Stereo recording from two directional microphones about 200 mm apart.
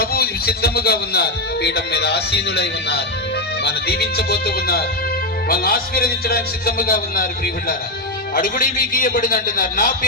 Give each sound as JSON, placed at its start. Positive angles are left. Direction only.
{"t": 0.0, "sound": "speech", "side_deg": 50}